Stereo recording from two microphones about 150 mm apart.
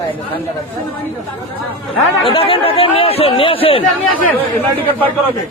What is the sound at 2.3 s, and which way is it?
A man's voice, 35° left (ahead or behind).